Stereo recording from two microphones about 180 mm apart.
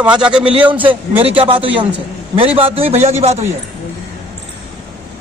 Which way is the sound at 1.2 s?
30° right (ahead or behind).